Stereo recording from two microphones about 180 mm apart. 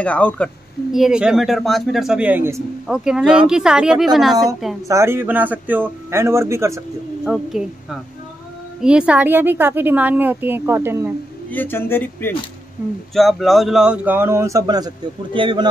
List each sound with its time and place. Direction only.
0.0 s speech: 5° left (ahead or behind)
0.9 s a man's voice: 5° right (ahead or behind)
4.8 s speech: 15° right (ahead or behind)
7.2 s a man's voice: centre (ahead or behind)
11.5 s speech: 10° left (ahead or behind)
12.8 s speech: 10° right (ahead or behind)
13.1 s a man's voice: centre (ahead or behind); by 15.7 s 25° right (ahead or behind)